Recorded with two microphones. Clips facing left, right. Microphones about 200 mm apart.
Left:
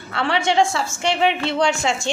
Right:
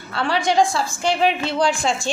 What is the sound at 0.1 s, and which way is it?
A woman's voice, 25° left (ahead or behind).